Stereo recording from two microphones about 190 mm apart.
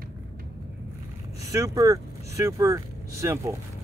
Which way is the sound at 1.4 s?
15° right (ahead or behind).